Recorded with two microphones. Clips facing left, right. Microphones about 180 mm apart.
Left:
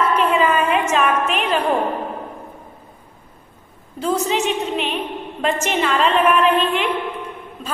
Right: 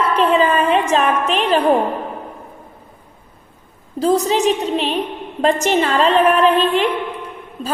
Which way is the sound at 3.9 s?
35° right (ahead or behind).